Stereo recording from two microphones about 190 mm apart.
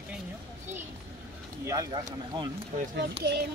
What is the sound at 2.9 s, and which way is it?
Speech, 55° right (ahead or behind).